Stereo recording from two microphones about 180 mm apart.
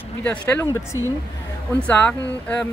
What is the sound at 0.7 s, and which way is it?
Speech, 15° right (ahead or behind).